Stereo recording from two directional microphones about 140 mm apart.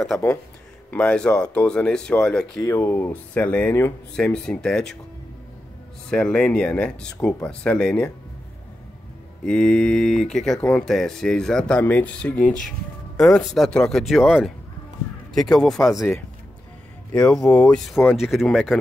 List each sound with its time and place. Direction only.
0.9 s speech: 5° left (ahead or behind)
2.6 s speech: 15° left (ahead or behind)
6.0 s speech: 5° left (ahead or behind)
9.4 s speech: 5° left (ahead or behind)
12.4 s speech: 70° left (ahead or behind)
13.6 s speech: 5° left (ahead or behind)
15.5 s speech: centre (ahead or behind)
16.0 s speech: 15° left (ahead or behind)
17.1 s speech: 5° left (ahead or behind)